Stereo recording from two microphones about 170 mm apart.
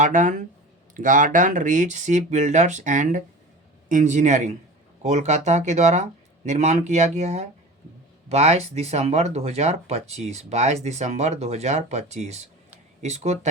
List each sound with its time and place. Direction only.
0.0 s speech: 50° right (ahead or behind)